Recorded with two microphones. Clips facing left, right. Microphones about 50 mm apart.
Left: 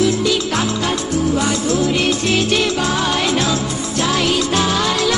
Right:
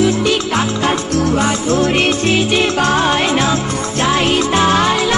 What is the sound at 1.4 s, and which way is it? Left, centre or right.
Music, right.